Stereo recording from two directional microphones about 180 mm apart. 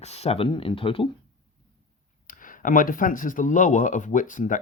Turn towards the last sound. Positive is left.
turn(degrees=45)  # may be behind; listen again after turning